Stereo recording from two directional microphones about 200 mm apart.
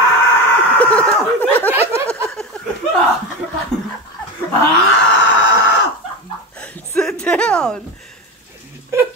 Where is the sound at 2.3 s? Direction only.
5° left (ahead or behind).